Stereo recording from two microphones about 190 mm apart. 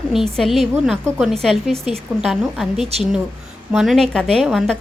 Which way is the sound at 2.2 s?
Centre (ahead or behind).